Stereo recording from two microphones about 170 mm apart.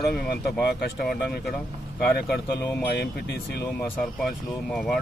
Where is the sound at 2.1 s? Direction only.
65° left (ahead or behind).